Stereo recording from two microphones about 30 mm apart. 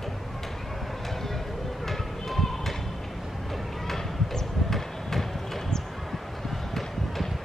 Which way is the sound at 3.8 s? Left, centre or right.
Centre.